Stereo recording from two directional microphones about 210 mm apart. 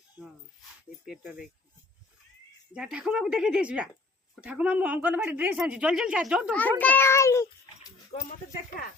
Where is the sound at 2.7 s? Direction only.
5° right (ahead or behind).